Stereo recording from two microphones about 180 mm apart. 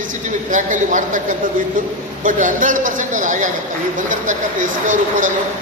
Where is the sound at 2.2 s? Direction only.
45° right (ahead or behind).